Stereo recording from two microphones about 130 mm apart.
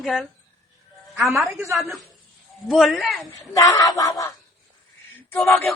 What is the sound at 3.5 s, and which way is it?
Speech, 25° left (ahead or behind).